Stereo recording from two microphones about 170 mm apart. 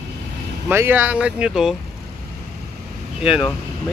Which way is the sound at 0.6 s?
15° right (ahead or behind).